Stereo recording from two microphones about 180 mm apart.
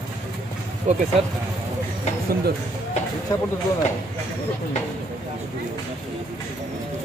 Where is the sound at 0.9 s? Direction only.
40° right (ahead or behind).